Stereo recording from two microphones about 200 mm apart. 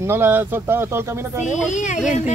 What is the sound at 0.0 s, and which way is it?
Speech, 10° right (ahead or behind).